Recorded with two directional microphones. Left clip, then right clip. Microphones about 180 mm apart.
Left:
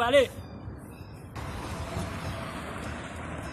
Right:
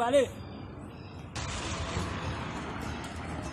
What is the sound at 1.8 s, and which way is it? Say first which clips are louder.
Vehicle: right 1 dB; 65° left (ahead or behind).